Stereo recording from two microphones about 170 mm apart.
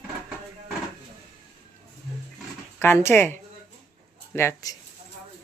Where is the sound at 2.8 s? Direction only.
15° left (ahead or behind).